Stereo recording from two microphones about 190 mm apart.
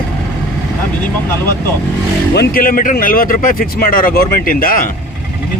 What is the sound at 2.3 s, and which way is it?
Speech, 55° left (ahead or behind).